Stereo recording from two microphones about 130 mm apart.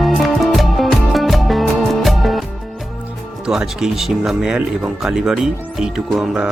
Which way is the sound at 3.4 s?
5° right (ahead or behind).